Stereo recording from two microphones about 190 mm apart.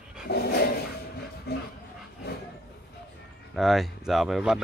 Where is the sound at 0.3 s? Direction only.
55° left (ahead or behind).